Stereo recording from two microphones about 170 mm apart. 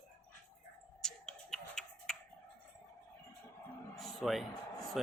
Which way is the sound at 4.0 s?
Centre (ahead or behind).